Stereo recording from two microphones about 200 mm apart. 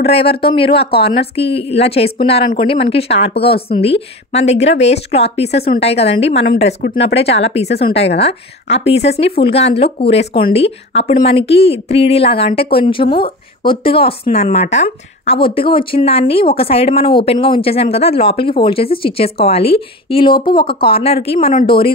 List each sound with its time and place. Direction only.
0.0 s speech: 30° left (ahead or behind)
5.5 s a woman's voice: 50° left (ahead or behind)
6.0 s speech: 30° left (ahead or behind)
6.3 s a woman's voice: 50° left (ahead or behind)
7.5 s speech: 30° left (ahead or behind)
7.9 s speech: 60° left (ahead or behind)
8.2 s speech: 30° left (ahead or behind)